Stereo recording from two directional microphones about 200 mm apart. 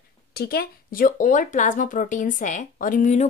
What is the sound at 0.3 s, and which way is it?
Speech, 50° left (ahead or behind).